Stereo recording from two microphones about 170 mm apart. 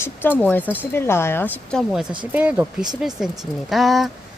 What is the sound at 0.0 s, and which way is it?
Speech, 10° left (ahead or behind).